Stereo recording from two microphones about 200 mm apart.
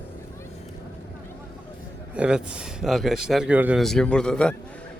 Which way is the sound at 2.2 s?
5° right (ahead or behind).